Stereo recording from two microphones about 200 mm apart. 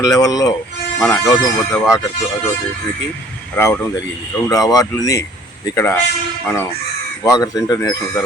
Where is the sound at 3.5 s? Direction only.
15° left (ahead or behind).